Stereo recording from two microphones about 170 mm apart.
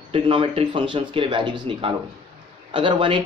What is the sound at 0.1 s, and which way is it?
Speech, 30° right (ahead or behind).